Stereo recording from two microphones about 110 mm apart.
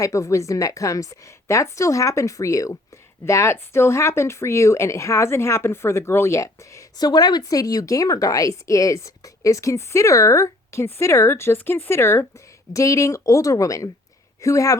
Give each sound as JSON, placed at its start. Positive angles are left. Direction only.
{"t": 0.0, "sound": "speech", "side_deg": 30}